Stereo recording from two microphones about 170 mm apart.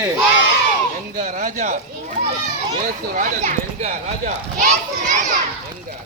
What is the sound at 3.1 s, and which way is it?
A child's voice, 50° right (ahead or behind).